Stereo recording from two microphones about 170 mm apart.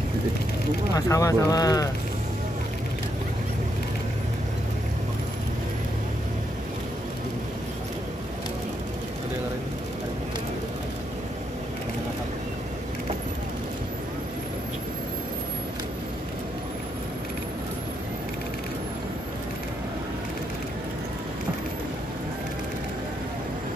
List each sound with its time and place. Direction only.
0.9 s speech: 20° left (ahead or behind)